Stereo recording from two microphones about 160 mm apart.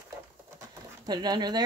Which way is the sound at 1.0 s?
25° right (ahead or behind).